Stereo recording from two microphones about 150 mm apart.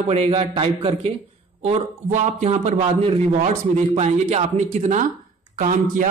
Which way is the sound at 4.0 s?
45° right (ahead or behind).